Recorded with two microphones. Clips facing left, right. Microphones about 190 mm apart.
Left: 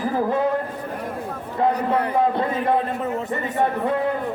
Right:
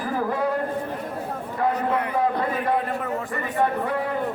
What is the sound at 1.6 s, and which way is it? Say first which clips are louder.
Speech: left 3 dB; 25° left (ahead or behind).